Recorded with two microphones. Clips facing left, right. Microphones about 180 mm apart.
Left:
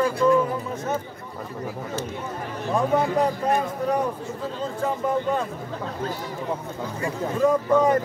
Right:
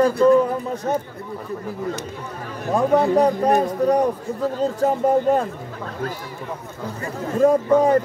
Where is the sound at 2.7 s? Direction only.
40° right (ahead or behind).